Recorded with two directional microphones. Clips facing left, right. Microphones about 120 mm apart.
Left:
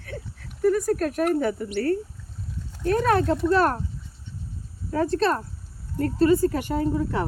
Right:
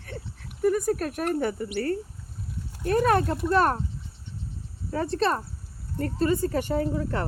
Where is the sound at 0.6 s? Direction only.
5° right (ahead or behind).